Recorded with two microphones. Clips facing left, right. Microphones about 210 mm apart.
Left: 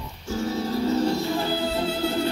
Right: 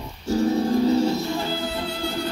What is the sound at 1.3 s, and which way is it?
Music, 20° left (ahead or behind).